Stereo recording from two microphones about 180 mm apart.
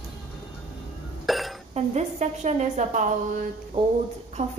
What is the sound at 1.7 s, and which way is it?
A woman's voice, 40° right (ahead or behind).